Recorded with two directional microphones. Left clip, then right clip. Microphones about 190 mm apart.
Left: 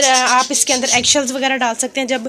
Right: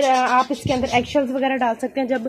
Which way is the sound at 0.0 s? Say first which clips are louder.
Left 4 dB; centre (ahead or behind).